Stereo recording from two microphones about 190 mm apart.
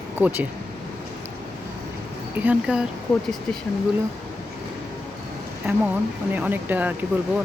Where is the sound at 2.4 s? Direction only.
5° right (ahead or behind).